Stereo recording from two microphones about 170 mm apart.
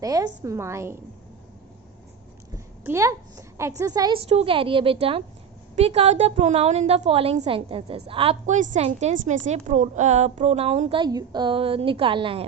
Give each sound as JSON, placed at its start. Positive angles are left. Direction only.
{"t": 0.0, "sound": "a woman's voice", "side_deg": -20}
{"t": 2.8, "sound": "a woman's voice", "side_deg": -15}
{"t": 4.3, "sound": "a woman's voice", "side_deg": -35}